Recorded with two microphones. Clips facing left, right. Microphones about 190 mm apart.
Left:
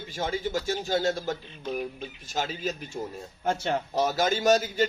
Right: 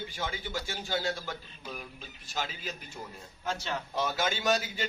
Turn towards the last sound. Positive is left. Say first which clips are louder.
# left 7 dB
turn(degrees=40)  # may be behind; listen again after turning